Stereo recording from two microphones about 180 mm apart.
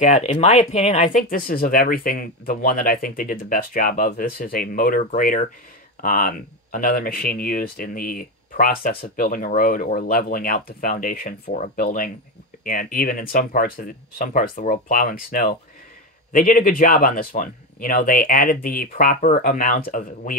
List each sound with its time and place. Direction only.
0.0 s speech: 40° left (ahead or behind)